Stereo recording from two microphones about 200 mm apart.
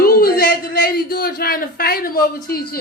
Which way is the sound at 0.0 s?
50° left (ahead or behind).